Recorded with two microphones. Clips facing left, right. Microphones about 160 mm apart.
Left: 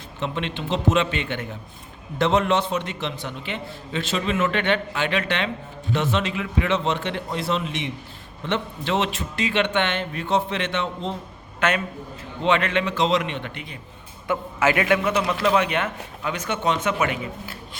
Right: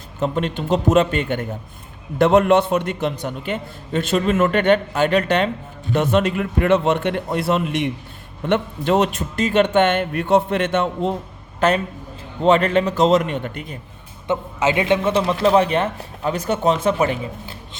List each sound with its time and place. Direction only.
0.2 s a man's voice: 45° right (ahead or behind)
12.4 s a man's voice: 40° right (ahead or behind)
14.3 s a man's voice: 20° right (ahead or behind)